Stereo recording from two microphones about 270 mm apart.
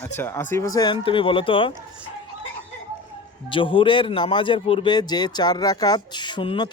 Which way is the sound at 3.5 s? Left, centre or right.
Centre.